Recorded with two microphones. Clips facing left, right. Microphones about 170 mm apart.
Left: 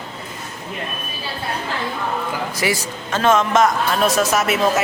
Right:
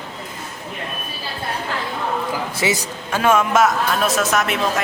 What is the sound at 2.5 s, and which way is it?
Speech, 20° right (ahead or behind).